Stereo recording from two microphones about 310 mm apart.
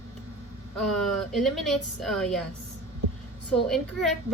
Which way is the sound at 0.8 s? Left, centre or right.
Centre.